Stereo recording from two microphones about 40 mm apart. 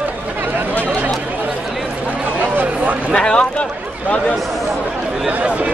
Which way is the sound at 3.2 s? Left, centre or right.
Left.